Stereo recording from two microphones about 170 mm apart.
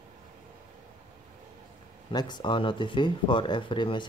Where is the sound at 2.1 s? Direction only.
25° left (ahead or behind).